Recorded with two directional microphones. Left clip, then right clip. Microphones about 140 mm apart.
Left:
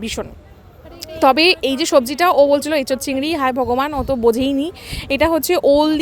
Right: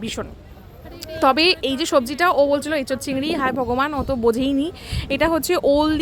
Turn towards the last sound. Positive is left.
turn(degrees=15)  # may be behind; listen again after turning